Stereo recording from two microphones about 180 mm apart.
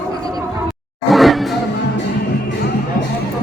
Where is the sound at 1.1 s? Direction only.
Centre (ahead or behind).